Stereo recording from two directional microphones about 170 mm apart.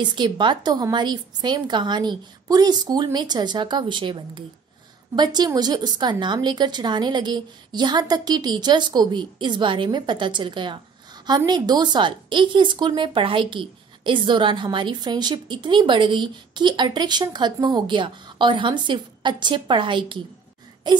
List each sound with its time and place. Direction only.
0.0 s a woman's voice: 25° right (ahead or behind)